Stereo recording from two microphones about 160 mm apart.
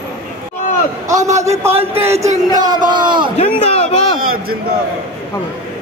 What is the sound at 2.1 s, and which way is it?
Speech, 45° right (ahead or behind).